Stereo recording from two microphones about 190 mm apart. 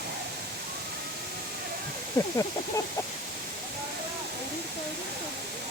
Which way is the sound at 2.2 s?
15° left (ahead or behind).